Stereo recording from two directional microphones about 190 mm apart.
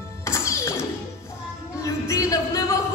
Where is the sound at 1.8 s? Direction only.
15° left (ahead or behind).